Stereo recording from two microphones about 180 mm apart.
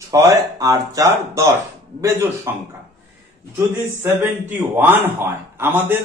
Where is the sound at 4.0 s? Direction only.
10° right (ahead or behind).